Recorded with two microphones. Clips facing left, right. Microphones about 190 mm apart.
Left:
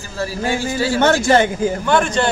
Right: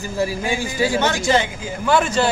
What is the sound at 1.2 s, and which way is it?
Speech, 50° left (ahead or behind).